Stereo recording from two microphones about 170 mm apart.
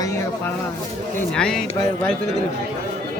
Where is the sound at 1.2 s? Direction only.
5° left (ahead or behind).